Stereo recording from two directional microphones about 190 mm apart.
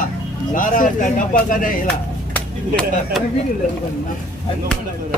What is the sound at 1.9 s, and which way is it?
Speech, 5° left (ahead or behind).